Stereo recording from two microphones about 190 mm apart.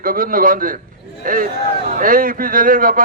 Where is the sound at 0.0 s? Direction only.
45° right (ahead or behind).